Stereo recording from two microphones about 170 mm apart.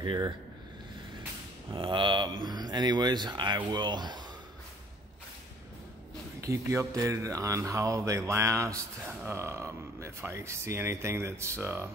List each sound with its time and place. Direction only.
0.0 s speech: 25° right (ahead or behind)
1.7 s speech: 30° right (ahead or behind)
6.4 s speech: 20° right (ahead or behind)